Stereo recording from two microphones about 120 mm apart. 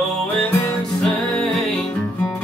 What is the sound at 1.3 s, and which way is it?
Music, 5° left (ahead or behind).